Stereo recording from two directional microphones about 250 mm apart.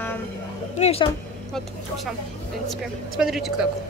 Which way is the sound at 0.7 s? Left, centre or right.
Left.